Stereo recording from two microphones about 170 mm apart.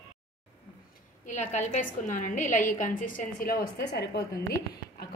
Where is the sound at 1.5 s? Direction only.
45° left (ahead or behind); by 4.3 s 80° left.